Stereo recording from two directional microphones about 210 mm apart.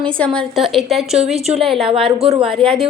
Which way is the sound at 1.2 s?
30° right (ahead or behind).